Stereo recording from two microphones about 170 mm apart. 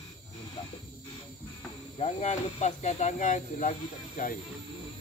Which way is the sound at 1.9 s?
40° left (ahead or behind).